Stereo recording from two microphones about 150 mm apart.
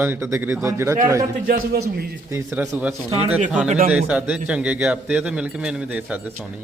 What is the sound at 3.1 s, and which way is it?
Speech, 45° right (ahead or behind).